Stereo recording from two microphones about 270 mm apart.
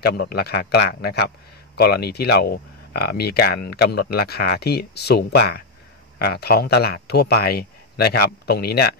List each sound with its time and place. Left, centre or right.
0.0 s speech: left